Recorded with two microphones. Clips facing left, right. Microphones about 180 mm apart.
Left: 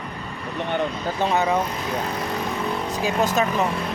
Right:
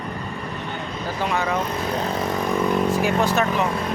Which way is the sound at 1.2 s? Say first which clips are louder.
Left 3 dB; 25° left (ahead or behind).